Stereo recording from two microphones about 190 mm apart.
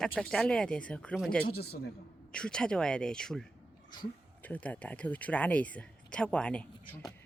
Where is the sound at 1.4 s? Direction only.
55° left (ahead or behind).